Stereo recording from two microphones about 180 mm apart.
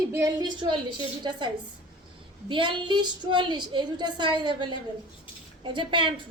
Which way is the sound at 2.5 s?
25° right (ahead or behind).